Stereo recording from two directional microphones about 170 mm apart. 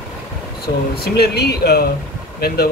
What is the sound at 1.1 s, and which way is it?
Speech, 70° left (ahead or behind).